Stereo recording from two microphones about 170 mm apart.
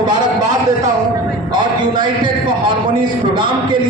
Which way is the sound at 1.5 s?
25° right (ahead or behind).